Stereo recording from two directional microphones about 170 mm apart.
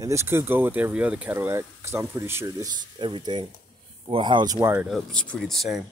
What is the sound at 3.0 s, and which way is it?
Speech, 25° right (ahead or behind).